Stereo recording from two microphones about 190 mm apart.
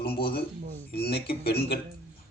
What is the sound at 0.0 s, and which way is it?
A man's voice, 55° left (ahead or behind).